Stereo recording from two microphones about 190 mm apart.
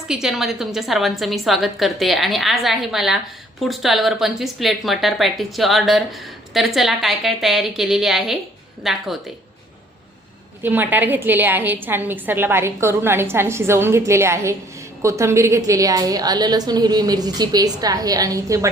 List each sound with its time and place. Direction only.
0.1 s speech: 5° right (ahead or behind)
10.6 s a woman's voice: 10° right (ahead or behind)